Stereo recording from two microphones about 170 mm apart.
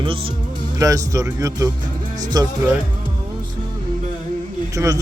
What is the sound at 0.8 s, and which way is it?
Speech, 20° right (ahead or behind).